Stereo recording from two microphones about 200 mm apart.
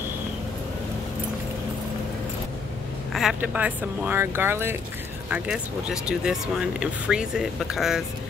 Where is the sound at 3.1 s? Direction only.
5° right (ahead or behind).